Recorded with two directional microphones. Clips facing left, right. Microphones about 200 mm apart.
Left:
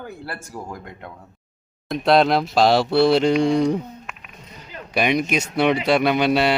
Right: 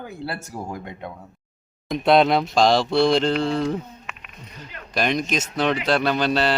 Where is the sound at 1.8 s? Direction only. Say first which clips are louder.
Even; centre (ahead or behind).